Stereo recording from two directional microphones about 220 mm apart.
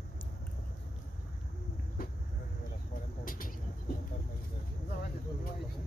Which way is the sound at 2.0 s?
40° left (ahead or behind).